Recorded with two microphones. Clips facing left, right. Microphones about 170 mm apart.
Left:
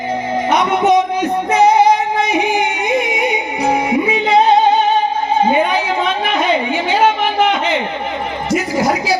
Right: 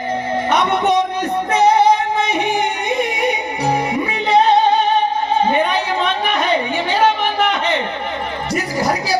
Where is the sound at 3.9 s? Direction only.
10° left (ahead or behind).